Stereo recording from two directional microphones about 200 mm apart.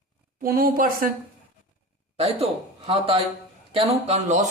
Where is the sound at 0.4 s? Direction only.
45° right (ahead or behind).